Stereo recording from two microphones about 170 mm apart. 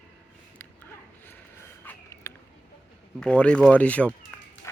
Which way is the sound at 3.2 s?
5° left (ahead or behind).